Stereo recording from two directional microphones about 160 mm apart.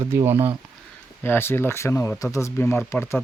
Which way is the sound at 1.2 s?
15° left (ahead or behind).